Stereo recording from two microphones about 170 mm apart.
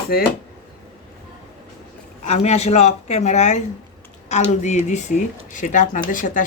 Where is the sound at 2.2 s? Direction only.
40° left (ahead or behind).